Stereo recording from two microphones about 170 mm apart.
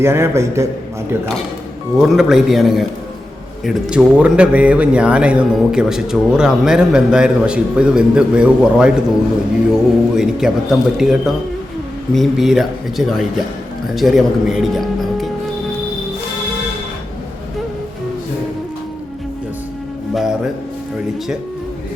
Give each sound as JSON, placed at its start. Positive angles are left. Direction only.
{"t": 0.0, "sound": "a man's voice", "side_deg": -15}
{"t": 2.0, "sound": "speech", "side_deg": 0}